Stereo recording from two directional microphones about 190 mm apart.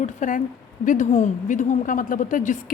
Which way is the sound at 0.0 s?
40° left (ahead or behind).